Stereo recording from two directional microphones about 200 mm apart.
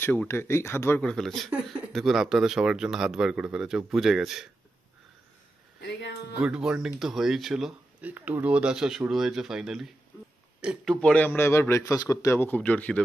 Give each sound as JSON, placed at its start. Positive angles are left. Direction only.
{"t": 0.0, "sound": "a man's voice", "side_deg": 10}
{"t": 5.8, "sound": "speech", "side_deg": 60}
{"t": 6.4, "sound": "a man's voice", "side_deg": -5}